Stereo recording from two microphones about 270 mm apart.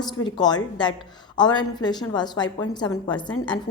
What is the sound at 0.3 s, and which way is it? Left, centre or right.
A woman's voice, centre.